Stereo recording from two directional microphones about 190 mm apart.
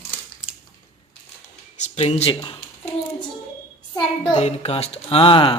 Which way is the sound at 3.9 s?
25° left (ahead or behind).